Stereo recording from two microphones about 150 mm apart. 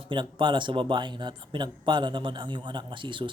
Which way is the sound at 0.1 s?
30° right (ahead or behind).